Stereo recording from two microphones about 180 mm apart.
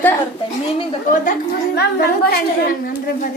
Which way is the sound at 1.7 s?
65° left (ahead or behind).